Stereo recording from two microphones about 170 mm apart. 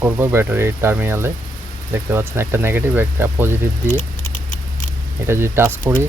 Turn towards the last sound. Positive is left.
turn(degrees=-15)  # may be behind; listen again after turning